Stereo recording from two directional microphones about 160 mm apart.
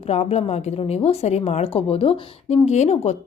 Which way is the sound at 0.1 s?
40° left (ahead or behind).